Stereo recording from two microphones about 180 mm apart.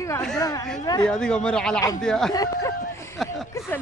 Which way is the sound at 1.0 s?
5° left (ahead or behind).